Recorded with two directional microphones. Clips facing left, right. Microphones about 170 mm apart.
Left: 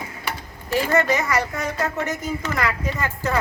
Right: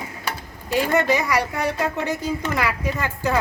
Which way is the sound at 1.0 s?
15° right (ahead or behind).